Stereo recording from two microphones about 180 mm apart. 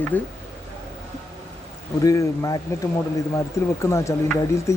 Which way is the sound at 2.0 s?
20° left (ahead or behind).